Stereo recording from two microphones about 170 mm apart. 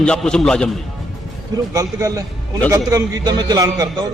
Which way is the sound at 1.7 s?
20° right (ahead or behind).